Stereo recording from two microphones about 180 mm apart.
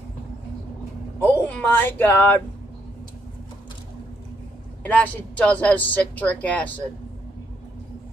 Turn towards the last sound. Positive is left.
turn(degrees=10)  # may be behind; listen again after turning